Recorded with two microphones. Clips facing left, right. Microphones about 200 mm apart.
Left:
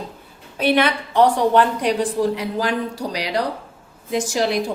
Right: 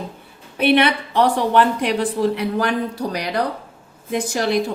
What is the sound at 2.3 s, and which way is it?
Speech, 60° right (ahead or behind).